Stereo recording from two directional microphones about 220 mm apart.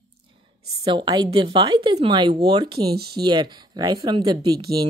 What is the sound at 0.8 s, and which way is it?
Speech, 20° right (ahead or behind).